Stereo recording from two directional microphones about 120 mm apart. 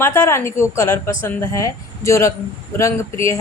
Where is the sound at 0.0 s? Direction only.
20° left (ahead or behind).